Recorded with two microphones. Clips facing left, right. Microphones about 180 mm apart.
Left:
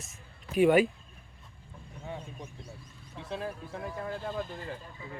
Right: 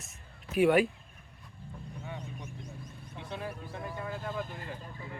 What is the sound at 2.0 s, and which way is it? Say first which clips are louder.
Vehicle: left 4 dB; 30° left (ahead or behind).